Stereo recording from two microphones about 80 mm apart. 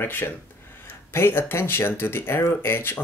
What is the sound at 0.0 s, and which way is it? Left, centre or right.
Speech, left.